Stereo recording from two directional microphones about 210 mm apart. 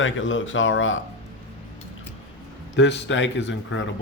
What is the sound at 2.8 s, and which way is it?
Speech, 55° left (ahead or behind).